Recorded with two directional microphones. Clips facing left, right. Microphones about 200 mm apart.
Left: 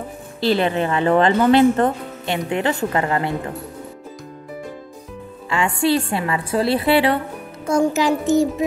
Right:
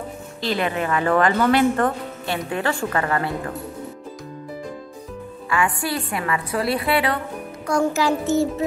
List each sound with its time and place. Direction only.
0.4 s speech: 30° left (ahead or behind)
5.5 s a child's voice: 25° left (ahead or behind)